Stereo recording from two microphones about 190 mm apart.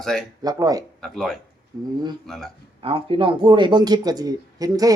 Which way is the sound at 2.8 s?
30° right (ahead or behind).